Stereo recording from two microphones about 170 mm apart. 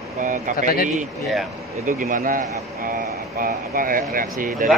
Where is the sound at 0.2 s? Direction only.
50° right (ahead or behind).